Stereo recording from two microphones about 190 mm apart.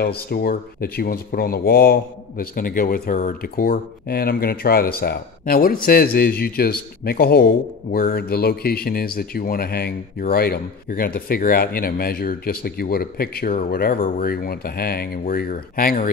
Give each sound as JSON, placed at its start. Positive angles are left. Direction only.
{"t": 0.0, "sound": "speech", "side_deg": 55}